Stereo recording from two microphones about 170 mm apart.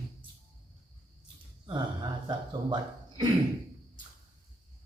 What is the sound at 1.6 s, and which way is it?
A man's voice, 25° right (ahead or behind).